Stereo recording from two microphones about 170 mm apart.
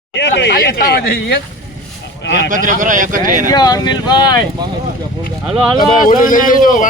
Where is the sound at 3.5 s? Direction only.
25° left (ahead or behind).